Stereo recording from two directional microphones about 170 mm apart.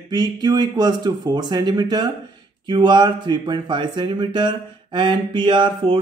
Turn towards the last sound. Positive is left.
turn(degrees=-30)  # may be behind; listen again after turning